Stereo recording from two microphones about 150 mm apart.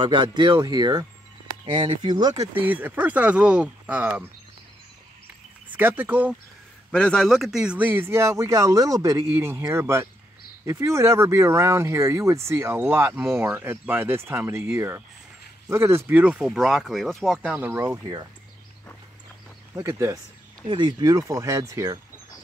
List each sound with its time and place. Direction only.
0.0 s speech: 30° right (ahead or behind)
2.5 s speech: 10° right (ahead or behind)
5.8 s speech: 15° right (ahead or behind)
6.9 s speech: 5° left (ahead or behind); by 18.2 s 20° right (ahead or behind)
19.7 s speech: 20° right (ahead or behind)
20.6 s speech: 30° right (ahead or behind)